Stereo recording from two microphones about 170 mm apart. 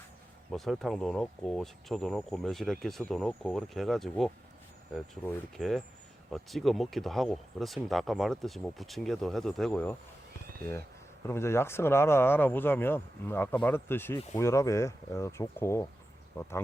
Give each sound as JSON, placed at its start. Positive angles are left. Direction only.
{"t": 0.5, "sound": "speech", "side_deg": 0}
{"t": 10.6, "sound": "speech", "side_deg": 15}